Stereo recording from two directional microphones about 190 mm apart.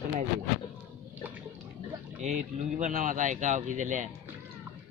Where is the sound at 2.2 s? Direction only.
40° right (ahead or behind).